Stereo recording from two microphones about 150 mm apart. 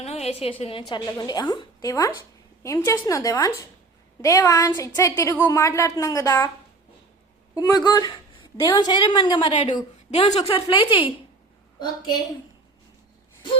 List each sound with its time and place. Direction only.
0.0 s a woman's voice: 45° left (ahead or behind); by 6.5 s 20° left (ahead or behind)
7.5 s a woman's voice: 25° left (ahead or behind)
9.5 s a woman's voice: 45° left (ahead or behind)